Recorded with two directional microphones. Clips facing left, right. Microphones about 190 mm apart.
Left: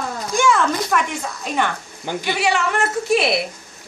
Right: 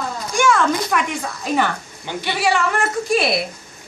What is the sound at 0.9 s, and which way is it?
A woman's voice, 5° right (ahead or behind).